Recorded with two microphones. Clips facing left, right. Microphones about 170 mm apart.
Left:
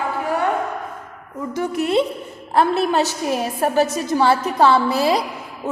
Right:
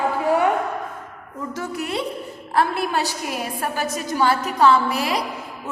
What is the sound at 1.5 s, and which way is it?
A woman's voice, 20° left (ahead or behind).